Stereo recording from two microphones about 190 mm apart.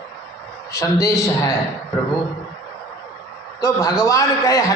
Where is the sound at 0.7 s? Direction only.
15° left (ahead or behind).